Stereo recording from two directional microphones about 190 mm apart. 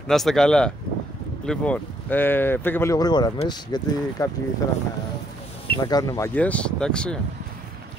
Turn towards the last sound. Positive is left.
turn(degrees=5)  # may be behind; listen again after turning